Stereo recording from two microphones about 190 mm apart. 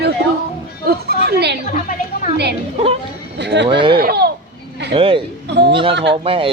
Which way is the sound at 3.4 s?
65° right (ahead or behind).